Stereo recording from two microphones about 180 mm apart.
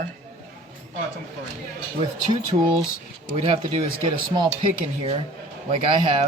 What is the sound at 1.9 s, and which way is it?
Speech, 25° right (ahead or behind).